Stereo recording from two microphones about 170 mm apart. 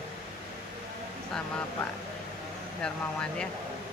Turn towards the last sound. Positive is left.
turn(degrees=5)  # may be behind; listen again after turning